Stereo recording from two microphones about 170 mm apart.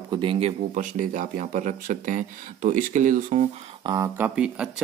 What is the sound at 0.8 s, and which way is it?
Speech, 50° right (ahead or behind).